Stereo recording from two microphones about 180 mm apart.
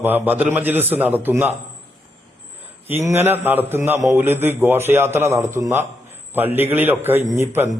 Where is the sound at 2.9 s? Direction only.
15° right (ahead or behind).